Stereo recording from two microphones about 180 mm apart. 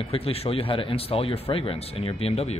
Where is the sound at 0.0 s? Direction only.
30° left (ahead or behind).